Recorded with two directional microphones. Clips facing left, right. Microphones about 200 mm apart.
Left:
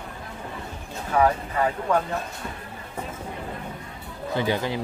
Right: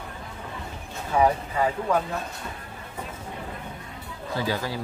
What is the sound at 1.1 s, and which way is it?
Speech, 10° right (ahead or behind).